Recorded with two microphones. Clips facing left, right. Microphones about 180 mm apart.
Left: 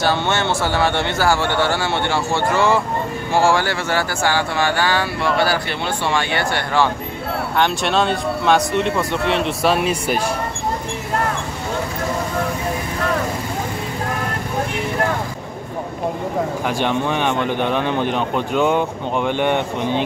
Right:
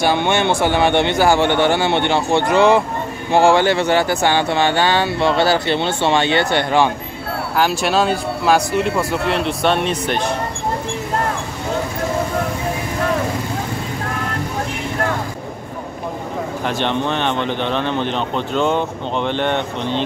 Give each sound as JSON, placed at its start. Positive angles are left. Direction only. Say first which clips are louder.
{"t": 0.0, "sound": "speech", "louder": "right 3 dB", "side_deg": -15}
{"t": 7.5, "sound": "speech", "louder": "right 2 dB", "side_deg": -5}
{"t": 16.6, "sound": "speech", "louder": "right 3 dB", "side_deg": 10}